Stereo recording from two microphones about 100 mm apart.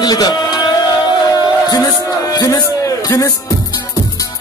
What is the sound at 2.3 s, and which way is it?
Music, 40° left (ahead or behind).